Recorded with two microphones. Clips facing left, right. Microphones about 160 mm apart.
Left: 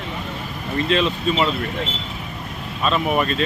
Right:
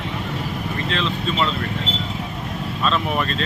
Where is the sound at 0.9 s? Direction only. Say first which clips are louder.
Left 5 dB; 15° left (ahead or behind).